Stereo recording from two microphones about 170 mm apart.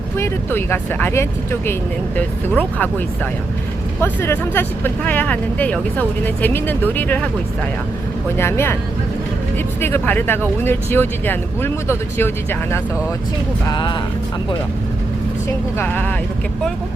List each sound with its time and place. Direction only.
0.2 s speech: 15° left (ahead or behind)
4.0 s speech: 15° left (ahead or behind)
8.4 s speech: 15° left (ahead or behind)
9.8 s speech: 10° left (ahead or behind)
13.7 s speech: 25° left (ahead or behind)
15.8 s speech: 10° left (ahead or behind)